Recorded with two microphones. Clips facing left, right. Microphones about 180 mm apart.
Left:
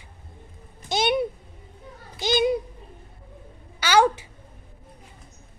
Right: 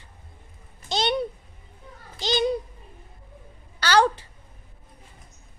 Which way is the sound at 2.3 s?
10° left (ahead or behind).